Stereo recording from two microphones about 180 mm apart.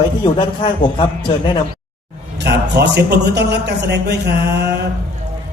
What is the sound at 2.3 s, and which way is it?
A man's voice, 70° right (ahead or behind).